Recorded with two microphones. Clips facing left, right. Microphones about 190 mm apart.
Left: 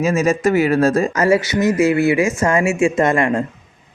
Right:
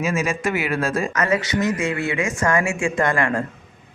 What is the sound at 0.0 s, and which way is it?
Speech, 40° left (ahead or behind).